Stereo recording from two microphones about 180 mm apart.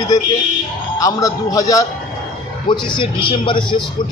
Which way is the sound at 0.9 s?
20° left (ahead or behind).